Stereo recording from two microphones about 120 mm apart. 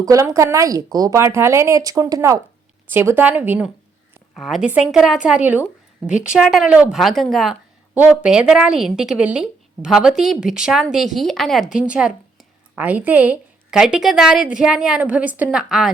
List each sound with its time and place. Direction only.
0.0 s speech: 30° right (ahead or behind)
2.9 s a woman's voice: 20° right (ahead or behind)
4.4 s a woman's voice: centre (ahead or behind)
7.0 s speech: centre (ahead or behind)
7.9 s a woman's voice: 10° right (ahead or behind)